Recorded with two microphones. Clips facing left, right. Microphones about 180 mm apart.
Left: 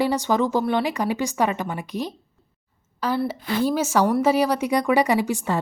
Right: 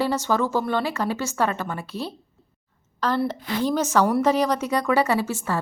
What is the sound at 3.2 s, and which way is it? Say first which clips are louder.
A woman's voice: left 1 dB; 10° left (ahead or behind).